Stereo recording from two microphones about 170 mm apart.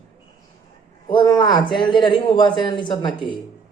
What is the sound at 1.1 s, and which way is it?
Speech, 25° left (ahead or behind).